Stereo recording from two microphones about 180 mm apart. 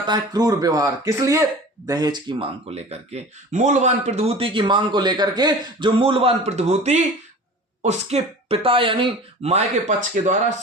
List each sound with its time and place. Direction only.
0.0 s speech: 25° right (ahead or behind); by 10.5 s 40° right (ahead or behind)